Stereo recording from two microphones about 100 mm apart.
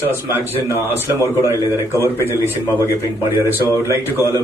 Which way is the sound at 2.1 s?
25° left (ahead or behind).